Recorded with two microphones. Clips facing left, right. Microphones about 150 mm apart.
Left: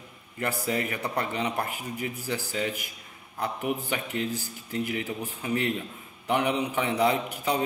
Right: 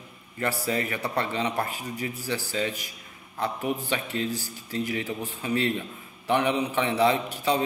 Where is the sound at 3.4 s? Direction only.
10° left (ahead or behind).